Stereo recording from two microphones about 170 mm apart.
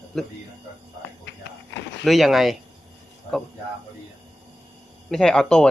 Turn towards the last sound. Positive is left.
turn(degrees=5)  # may be behind; listen again after turning